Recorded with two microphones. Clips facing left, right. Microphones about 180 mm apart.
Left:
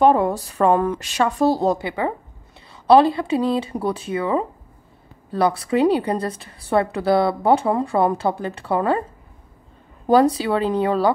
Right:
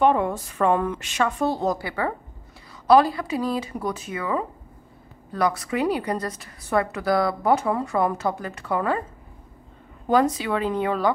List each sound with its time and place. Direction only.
0.0 s a woman's voice: 35° left (ahead or behind)
10.0 s a woman's voice: 35° left (ahead or behind)